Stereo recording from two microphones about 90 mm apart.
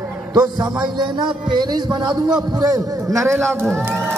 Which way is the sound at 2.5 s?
40° right (ahead or behind).